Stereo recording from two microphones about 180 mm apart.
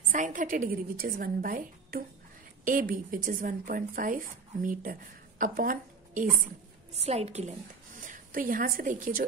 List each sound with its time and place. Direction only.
0.1 s a woman's voice: 45° right (ahead or behind)
7.0 s a woman's voice: 35° right (ahead or behind)
8.0 s a woman's voice: 50° right (ahead or behind)